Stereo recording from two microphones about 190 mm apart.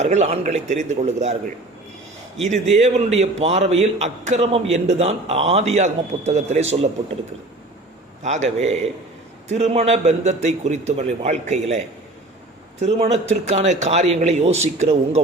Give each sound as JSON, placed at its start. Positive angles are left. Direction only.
{"t": 0.0, "sound": "a man's voice", "side_deg": -35}
{"t": 2.7, "sound": "a man's voice", "side_deg": -35}
{"t": 8.2, "sound": "a man's voice", "side_deg": -35}
{"t": 12.8, "sound": "a man's voice", "side_deg": -35}